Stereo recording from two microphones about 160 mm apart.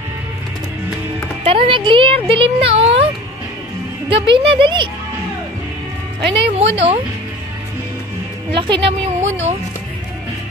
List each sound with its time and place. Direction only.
1.4 s speech: 35° right (ahead or behind)
4.1 s speech: 35° right (ahead or behind)
6.3 s speech: 35° right (ahead or behind)
8.5 s speech: 30° right (ahead or behind)
9.2 s speech: 45° right (ahead or behind)